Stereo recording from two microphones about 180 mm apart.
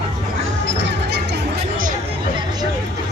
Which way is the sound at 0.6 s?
85° right.